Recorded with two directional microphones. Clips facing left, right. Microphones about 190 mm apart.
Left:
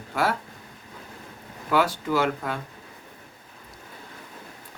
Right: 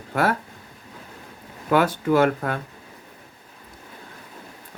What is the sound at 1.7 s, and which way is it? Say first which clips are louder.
Speech: right 4 dB; 55° right (ahead or behind).